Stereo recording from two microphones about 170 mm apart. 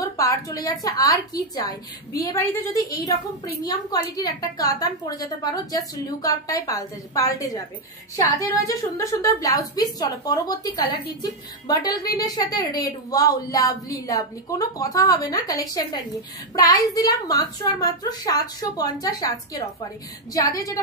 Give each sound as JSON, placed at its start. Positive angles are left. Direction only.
{"t": 0.0, "sound": "a woman's voice", "side_deg": 20}